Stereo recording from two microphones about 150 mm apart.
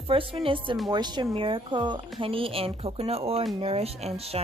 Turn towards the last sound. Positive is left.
turn(degrees=-40)  # may be behind; listen again after turning